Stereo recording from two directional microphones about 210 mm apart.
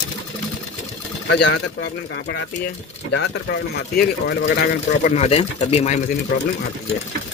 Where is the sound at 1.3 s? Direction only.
55° left (ahead or behind).